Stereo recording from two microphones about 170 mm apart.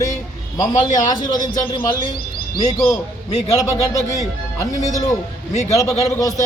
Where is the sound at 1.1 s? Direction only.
25° left (ahead or behind).